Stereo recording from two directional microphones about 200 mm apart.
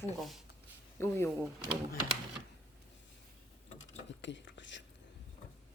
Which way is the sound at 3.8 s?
65° left (ahead or behind).